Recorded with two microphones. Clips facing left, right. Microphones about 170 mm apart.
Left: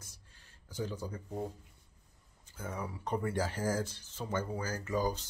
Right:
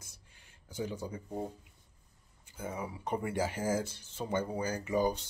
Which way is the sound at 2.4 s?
10° right (ahead or behind).